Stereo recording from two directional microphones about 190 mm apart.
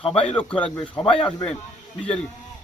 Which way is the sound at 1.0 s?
25° left (ahead or behind).